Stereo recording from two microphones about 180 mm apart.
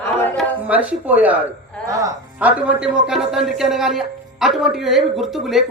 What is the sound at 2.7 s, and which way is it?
Speech, 5° right (ahead or behind).